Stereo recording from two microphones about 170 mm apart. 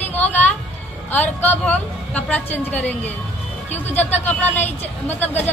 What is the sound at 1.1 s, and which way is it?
Speech, 10° left (ahead or behind).